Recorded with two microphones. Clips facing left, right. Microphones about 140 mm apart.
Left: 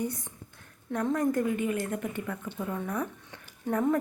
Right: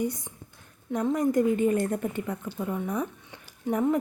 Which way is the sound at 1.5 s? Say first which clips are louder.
Right 6 dB; 30° right (ahead or behind).